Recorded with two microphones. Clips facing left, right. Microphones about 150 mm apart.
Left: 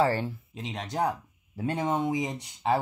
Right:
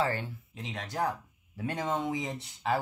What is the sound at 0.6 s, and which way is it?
Speech, 20° left (ahead or behind).